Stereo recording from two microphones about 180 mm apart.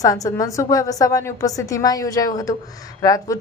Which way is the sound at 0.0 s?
20° left (ahead or behind).